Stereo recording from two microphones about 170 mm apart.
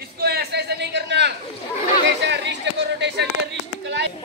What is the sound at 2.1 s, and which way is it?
Chatter, 90° right.